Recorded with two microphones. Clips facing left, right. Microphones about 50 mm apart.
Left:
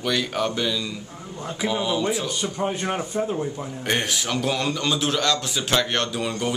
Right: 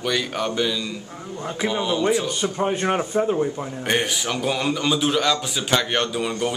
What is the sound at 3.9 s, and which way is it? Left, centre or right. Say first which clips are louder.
A man's voice: right 1 dB; centre.